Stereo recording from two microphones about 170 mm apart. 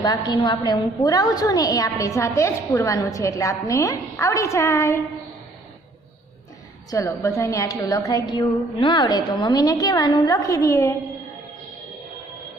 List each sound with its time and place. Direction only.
0.0 s a woman's voice: 25° left (ahead or behind)
6.9 s a woman's voice: 20° left (ahead or behind)